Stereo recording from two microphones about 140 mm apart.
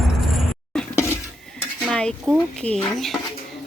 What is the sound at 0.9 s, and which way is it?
Dishes, 20° left (ahead or behind).